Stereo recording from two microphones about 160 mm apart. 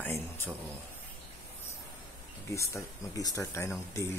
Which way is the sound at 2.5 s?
20° left (ahead or behind).